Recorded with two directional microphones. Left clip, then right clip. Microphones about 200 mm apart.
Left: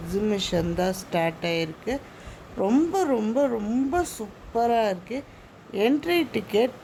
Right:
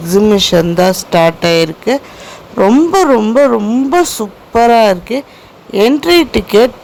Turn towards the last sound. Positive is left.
turn(degrees=-10)  # may be behind; listen again after turning